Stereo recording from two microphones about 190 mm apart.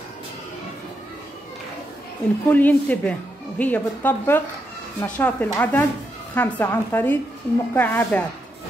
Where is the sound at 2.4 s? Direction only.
10° left (ahead or behind).